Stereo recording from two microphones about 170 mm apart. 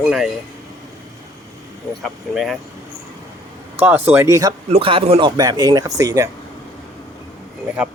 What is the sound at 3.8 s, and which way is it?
Speech, 10° right (ahead or behind).